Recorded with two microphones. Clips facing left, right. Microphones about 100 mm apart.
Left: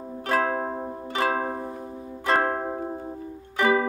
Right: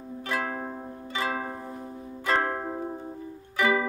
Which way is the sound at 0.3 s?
45° left (ahead or behind).